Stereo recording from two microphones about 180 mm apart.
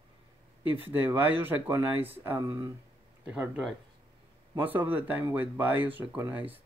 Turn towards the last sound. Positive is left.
turn(degrees=-15)  # may be behind; listen again after turning